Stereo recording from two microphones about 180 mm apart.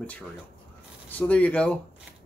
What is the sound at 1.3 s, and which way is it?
Speech, 5° left (ahead or behind).